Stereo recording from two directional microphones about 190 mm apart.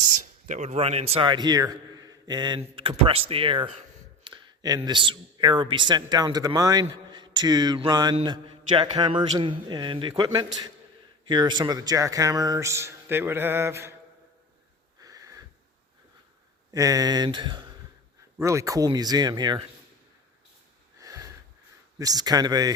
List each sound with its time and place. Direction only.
0.4 s a man's voice: 40° right (ahead or behind); by 13.9 s 15° right (ahead or behind)
15.0 s wheeze: 20° right (ahead or behind)
16.7 s a man's voice: 20° right (ahead or behind)
21.0 s sniff: 15° right (ahead or behind)
21.9 s a man's voice: 20° right (ahead or behind)